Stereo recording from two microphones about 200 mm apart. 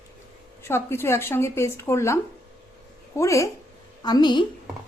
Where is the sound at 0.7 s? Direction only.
10° left (ahead or behind).